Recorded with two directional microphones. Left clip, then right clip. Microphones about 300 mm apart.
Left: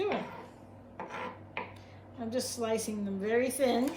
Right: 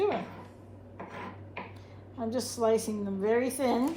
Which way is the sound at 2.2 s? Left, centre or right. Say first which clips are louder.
Right 5 dB; centre.